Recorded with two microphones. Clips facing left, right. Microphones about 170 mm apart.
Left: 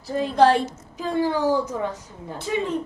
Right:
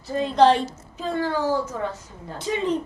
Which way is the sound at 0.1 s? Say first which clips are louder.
Even; 10° left (ahead or behind).